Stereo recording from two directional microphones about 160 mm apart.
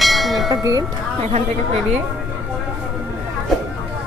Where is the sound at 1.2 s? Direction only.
45° right (ahead or behind).